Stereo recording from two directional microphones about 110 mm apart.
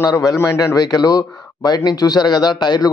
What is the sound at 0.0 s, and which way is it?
Speech, 30° left (ahead or behind).